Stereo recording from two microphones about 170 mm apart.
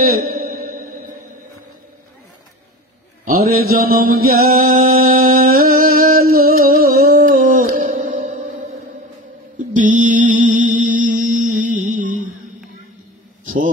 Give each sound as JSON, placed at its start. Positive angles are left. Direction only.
{"t": 0.2, "sound": "music", "side_deg": -60}
{"t": 3.3, "sound": "a sound", "side_deg": -60}
{"t": 9.8, "sound": "mantra", "side_deg": -45}